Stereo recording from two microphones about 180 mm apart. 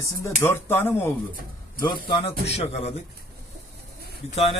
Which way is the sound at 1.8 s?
30° left (ahead or behind).